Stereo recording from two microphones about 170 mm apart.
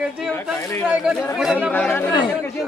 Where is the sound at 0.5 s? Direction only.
15° left (ahead or behind).